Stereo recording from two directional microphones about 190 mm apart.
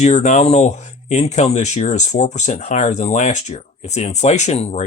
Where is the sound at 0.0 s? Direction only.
40° left (ahead or behind).